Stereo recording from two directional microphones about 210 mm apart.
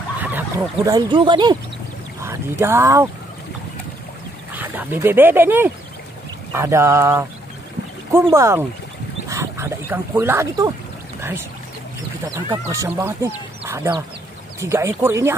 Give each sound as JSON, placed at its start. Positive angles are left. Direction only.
{"t": 0.2, "sound": "speech", "side_deg": -10}
{"t": 2.2, "sound": "speech", "side_deg": -10}
{"t": 4.6, "sound": "speech", "side_deg": -10}
{"t": 12.3, "sound": "speech", "side_deg": -15}